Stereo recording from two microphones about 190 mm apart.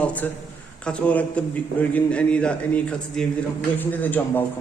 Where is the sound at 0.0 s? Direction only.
5° left (ahead or behind).